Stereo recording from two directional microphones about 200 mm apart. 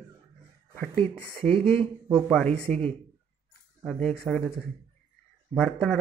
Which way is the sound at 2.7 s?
40° right (ahead or behind).